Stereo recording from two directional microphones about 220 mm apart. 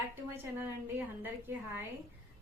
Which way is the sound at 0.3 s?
10° right (ahead or behind).